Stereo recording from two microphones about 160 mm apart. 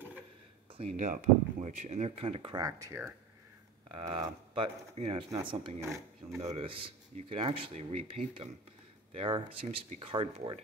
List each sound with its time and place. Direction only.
0.7 s speech: 45° right (ahead or behind)
2.9 s speech: 10° right (ahead or behind)
3.9 s speech: 30° right (ahead or behind)
9.1 s speech: 35° right (ahead or behind)